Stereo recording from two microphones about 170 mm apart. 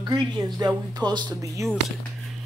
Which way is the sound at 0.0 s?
25° right (ahead or behind).